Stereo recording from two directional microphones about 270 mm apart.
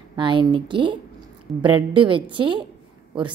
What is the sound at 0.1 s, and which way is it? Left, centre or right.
A woman's voice, centre.